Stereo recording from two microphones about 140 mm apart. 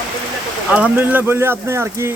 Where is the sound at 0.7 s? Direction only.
10° right (ahead or behind).